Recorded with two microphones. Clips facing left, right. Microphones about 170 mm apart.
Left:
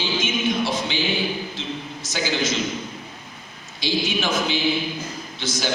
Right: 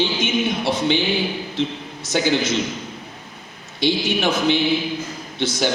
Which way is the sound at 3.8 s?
60° right (ahead or behind).